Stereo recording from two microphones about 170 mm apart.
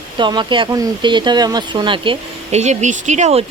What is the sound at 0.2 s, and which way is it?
Speech, 25° right (ahead or behind).